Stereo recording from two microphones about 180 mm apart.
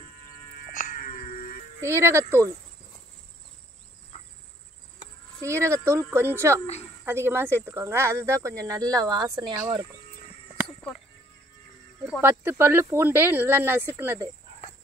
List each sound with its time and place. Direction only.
0.7 s music: 50° left (ahead or behind)
1.8 s speech: 15° right (ahead or behind)
5.4 s speech: 15° right (ahead or behind)
6.6 s a woman's voice: 35° left (ahead or behind)
7.1 s speech: 15° right (ahead or behind)
12.2 s speech: 15° right (ahead or behind)